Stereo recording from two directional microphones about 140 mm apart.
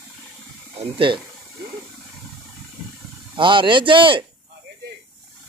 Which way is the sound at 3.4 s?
35° right (ahead or behind).